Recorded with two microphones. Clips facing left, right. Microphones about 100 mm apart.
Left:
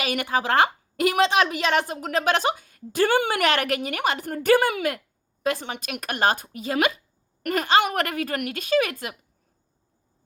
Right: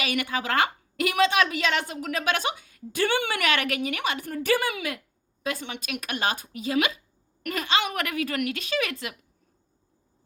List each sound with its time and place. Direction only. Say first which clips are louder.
0.0 s a woman's voice: left 3 dB; 45° left (ahead or behind)